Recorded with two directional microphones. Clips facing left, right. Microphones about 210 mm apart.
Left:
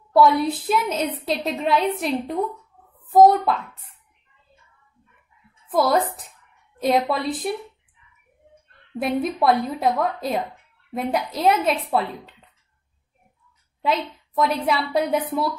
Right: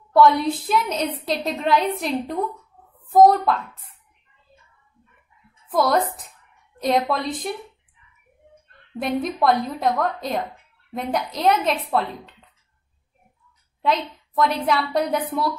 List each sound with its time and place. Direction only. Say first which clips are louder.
0.1 s a woman's voice: even; 5° left (ahead or behind)
5.7 s a woman's voice: even; 5° left (ahead or behind)
9.0 s a woman's voice: left 1 dB; 5° left (ahead or behind)
13.8 s a woman's voice: right 1 dB; 5° left (ahead or behind)